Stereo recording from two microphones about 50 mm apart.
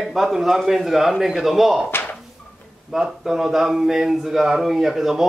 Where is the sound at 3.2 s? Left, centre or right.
Centre.